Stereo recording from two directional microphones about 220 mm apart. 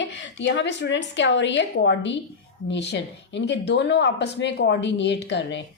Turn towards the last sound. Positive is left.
turn(degrees=55)  # may be behind; listen again after turning